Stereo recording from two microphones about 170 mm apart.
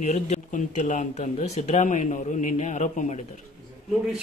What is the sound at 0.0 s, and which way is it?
Speech, 45° left (ahead or behind).